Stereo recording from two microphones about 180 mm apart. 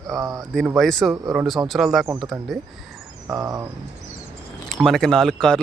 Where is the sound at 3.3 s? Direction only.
20° right (ahead or behind).